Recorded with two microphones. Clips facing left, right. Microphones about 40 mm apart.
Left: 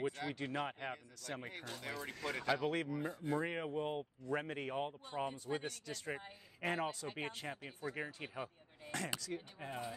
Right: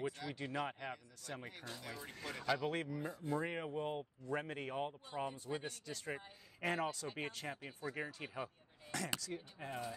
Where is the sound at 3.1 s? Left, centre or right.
Left.